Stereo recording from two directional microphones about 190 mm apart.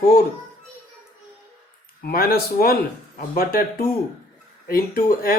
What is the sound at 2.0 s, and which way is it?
Speech, 50° left (ahead or behind).